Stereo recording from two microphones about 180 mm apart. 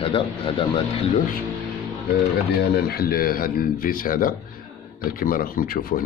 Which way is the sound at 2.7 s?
60° left (ahead or behind).